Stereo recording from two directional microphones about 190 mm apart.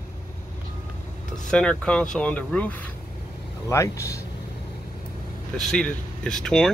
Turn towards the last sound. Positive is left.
turn(degrees=5)  # may be behind; listen again after turning